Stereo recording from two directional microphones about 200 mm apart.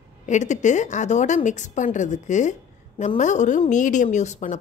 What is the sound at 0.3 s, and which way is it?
A woman's voice, 35° left (ahead or behind).